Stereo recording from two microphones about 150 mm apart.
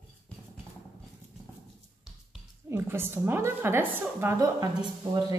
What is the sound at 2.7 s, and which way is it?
A woman's voice, 15° right (ahead or behind).